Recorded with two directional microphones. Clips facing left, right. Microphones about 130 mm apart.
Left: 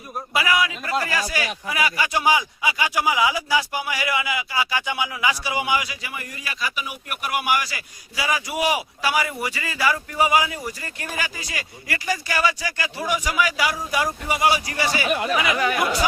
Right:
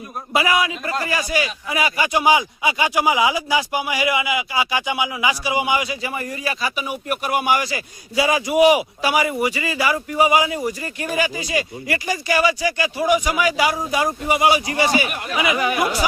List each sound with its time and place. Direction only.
0.3 s speech: 25° right (ahead or behind)